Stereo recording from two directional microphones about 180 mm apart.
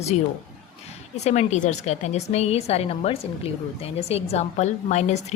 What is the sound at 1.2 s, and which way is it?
A woman's voice, 40° left (ahead or behind).